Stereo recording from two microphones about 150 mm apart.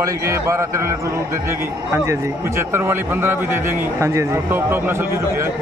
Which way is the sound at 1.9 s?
15° right (ahead or behind).